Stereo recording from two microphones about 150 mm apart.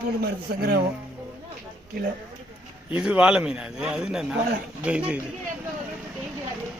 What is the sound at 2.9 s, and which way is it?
A man's voice, 10° right (ahead or behind).